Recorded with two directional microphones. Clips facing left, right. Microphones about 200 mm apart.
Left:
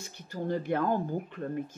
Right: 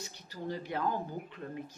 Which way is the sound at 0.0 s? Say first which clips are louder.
Left 5 dB; 50° left (ahead or behind).